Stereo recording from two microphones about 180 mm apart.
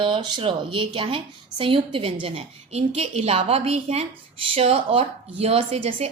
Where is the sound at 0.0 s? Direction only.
25° right (ahead or behind).